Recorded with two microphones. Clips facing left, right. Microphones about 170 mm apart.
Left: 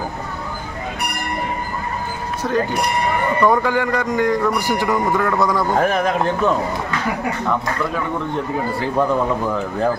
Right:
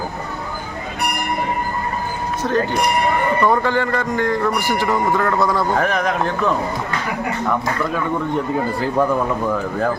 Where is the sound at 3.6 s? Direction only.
10° left (ahead or behind).